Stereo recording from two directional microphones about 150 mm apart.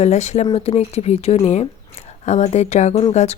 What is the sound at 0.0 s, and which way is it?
Speech, 50° left (ahead or behind).